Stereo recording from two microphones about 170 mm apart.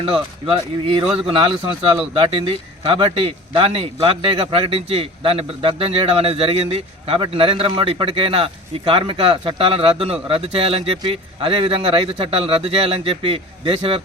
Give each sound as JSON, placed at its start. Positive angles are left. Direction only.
{"t": 0.0, "sound": "speech", "side_deg": -35}